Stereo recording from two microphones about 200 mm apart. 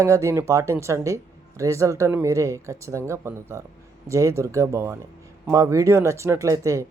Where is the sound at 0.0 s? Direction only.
15° right (ahead or behind).